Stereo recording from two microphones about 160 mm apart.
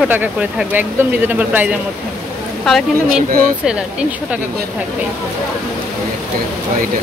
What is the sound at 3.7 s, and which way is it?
Speech, 5° right (ahead or behind).